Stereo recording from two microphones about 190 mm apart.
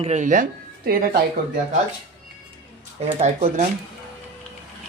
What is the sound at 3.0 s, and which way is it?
Speech, 35° right (ahead or behind).